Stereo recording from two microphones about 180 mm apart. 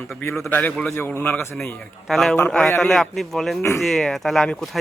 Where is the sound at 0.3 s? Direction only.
5° left (ahead or behind).